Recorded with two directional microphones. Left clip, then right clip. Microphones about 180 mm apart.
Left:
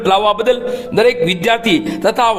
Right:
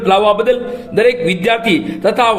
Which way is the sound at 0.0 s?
35° left (ahead or behind).